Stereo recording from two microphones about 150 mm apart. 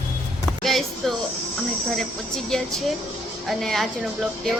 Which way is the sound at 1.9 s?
Centre (ahead or behind).